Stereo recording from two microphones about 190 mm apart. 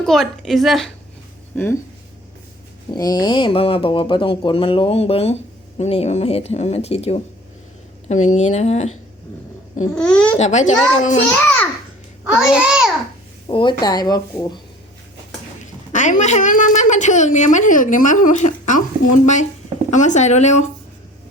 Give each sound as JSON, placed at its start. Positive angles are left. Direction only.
{"t": 0.0, "sound": "a woman's voice", "side_deg": 0}
{"t": 2.9, "sound": "speech", "side_deg": 20}
{"t": 9.9, "sound": "a woman's voice", "side_deg": 5}
{"t": 10.3, "sound": "speech", "side_deg": 40}
{"t": 11.3, "sound": "a child's voice", "side_deg": 10}
{"t": 12.3, "sound": "a woman's voice", "side_deg": -5}
{"t": 13.5, "sound": "speech", "side_deg": 25}
{"t": 15.9, "sound": "speech", "side_deg": 40}